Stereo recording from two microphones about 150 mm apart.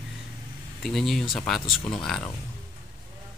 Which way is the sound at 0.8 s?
Centre (ahead or behind).